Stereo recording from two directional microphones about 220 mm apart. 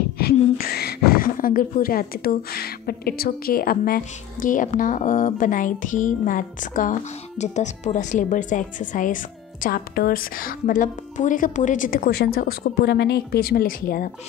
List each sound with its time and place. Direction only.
0.2 s a woman's voice: 45° left (ahead or behind)